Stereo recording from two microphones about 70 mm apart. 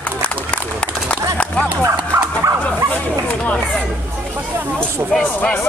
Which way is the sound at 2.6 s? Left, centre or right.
Centre.